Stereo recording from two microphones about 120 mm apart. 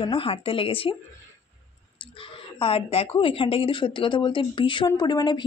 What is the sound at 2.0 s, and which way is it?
A woman's voice, 45° left (ahead or behind).